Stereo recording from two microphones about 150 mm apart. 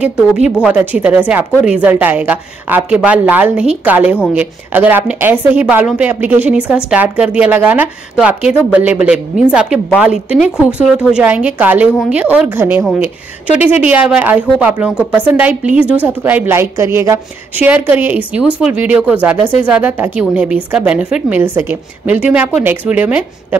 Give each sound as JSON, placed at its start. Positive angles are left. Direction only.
{"t": 0.0, "sound": "speech", "side_deg": -5}